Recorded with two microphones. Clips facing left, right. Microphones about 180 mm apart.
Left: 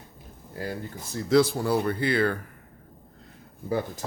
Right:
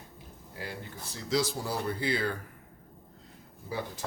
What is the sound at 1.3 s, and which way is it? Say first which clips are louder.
Speech: left 9 dB; 60° left (ahead or behind).